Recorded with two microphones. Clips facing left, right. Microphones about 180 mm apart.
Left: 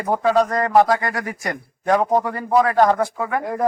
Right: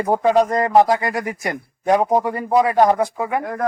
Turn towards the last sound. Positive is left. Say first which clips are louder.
# left 1 dB
turn(degrees=25)  # may be behind; listen again after turning